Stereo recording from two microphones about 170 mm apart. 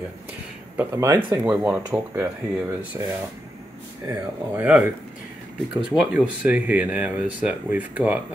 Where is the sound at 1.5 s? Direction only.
5° right (ahead or behind).